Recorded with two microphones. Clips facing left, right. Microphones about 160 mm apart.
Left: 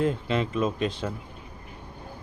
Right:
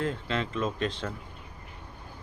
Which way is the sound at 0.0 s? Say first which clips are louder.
Left 5 dB; 15° left (ahead or behind).